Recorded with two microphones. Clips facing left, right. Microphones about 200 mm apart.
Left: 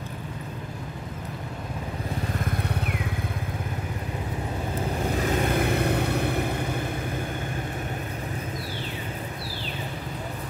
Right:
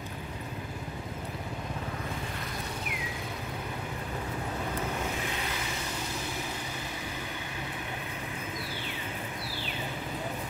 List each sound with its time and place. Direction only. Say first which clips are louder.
5.0 s vehicle: left 9 dB; 45° left (ahead or behind)